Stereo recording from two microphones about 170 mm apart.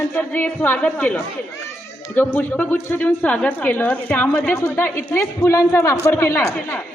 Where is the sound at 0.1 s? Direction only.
10° left (ahead or behind).